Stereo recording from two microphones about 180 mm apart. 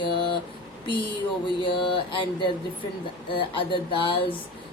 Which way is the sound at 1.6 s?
30° left (ahead or behind).